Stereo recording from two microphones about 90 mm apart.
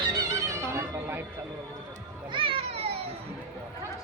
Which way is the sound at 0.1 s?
40° right (ahead or behind).